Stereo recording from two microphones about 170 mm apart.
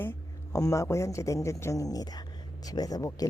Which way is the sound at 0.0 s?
15° left (ahead or behind).